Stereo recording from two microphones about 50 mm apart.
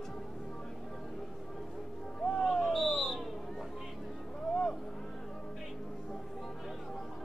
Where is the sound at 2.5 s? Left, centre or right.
Centre.